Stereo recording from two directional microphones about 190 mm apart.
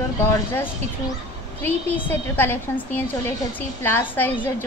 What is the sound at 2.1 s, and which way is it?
A woman's voice, 10° left (ahead or behind).